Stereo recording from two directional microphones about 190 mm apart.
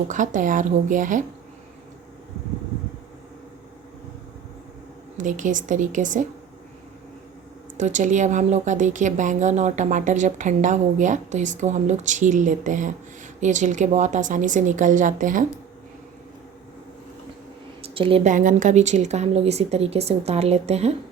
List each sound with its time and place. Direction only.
0.1 s speech: 40° right (ahead or behind)
5.1 s speech: 40° right (ahead or behind)
7.8 s speech: 40° right (ahead or behind)
17.8 s speech: 30° right (ahead or behind)